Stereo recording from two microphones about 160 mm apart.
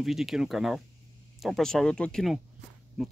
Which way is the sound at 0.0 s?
Centre (ahead or behind).